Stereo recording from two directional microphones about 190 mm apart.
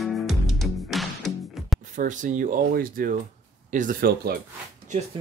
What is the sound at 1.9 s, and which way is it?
Speech, 40° right (ahead or behind).